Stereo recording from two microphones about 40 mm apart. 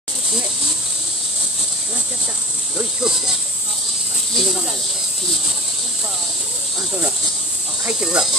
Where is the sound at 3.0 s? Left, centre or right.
Centre.